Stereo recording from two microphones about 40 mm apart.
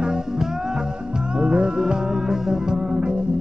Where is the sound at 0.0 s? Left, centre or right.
Right.